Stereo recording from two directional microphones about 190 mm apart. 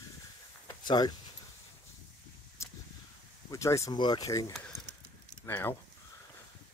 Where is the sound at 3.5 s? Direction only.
15° left (ahead or behind).